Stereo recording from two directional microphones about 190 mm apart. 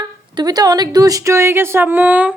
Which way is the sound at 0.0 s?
20° right (ahead or behind).